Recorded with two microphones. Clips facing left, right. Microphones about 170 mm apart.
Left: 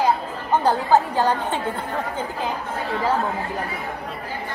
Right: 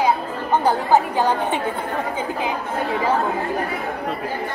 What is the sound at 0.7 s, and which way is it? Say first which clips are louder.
Speech: even; 15° right (ahead or behind).